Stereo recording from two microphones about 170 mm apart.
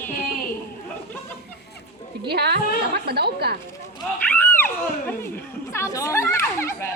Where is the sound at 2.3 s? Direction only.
70° right (ahead or behind).